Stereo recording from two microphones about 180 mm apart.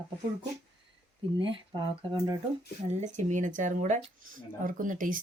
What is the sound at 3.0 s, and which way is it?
Speech, 40° right (ahead or behind).